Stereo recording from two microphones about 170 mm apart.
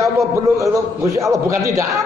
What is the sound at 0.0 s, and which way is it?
A man's voice, 20° right (ahead or behind).